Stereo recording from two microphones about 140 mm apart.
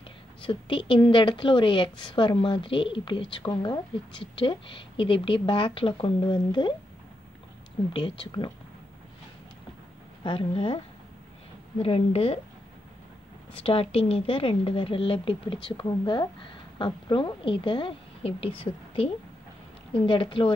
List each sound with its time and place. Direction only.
0.4 s a woman's voice: 35° left (ahead or behind)
7.9 s a woman's voice: 40° left (ahead or behind)
10.2 s a woman's voice: 40° left (ahead or behind)
11.8 s speech: 45° left (ahead or behind)
13.6 s a woman's voice: 45° left (ahead or behind)
19.9 s a woman's voice: 40° left (ahead or behind)